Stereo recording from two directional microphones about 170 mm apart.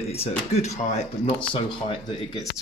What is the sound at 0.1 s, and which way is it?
Speech, 40° left (ahead or behind).